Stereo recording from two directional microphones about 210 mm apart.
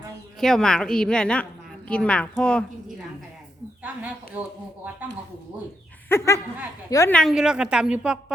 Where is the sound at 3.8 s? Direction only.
5° right (ahead or behind).